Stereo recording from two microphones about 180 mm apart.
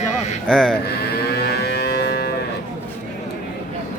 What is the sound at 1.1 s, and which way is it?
Cattle, 65° left (ahead or behind).